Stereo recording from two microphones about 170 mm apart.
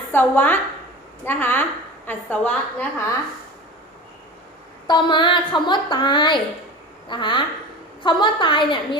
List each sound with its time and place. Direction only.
0.1 s a woman's voice: 10° left (ahead or behind)
4.9 s a woman's voice: 25° left (ahead or behind)